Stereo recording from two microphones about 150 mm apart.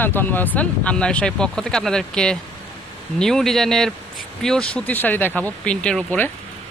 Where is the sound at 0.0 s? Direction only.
15° left (ahead or behind).